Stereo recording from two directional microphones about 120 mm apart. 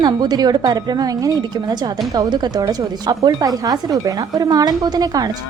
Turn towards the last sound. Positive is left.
turn(degrees=-30)  # may be behind; listen again after turning